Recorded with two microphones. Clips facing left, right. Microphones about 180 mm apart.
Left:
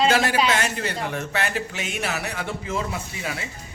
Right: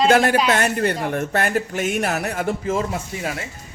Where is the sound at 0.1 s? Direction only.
55° right (ahead or behind).